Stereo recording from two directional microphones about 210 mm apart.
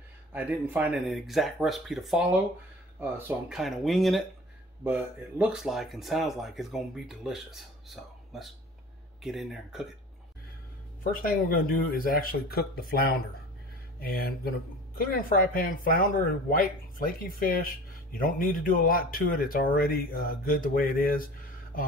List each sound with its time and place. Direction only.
0.3 s speech: 5° right (ahead or behind)
5.4 s speech: centre (ahead or behind)
11.1 s speech: 40° left (ahead or behind)
13.9 s speech: 45° left (ahead or behind)